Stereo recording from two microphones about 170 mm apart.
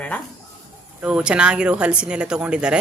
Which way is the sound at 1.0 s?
5° right (ahead or behind).